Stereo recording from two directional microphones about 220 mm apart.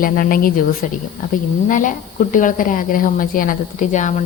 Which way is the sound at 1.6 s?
35° left (ahead or behind).